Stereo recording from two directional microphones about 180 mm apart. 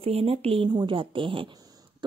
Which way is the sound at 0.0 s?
35° right (ahead or behind).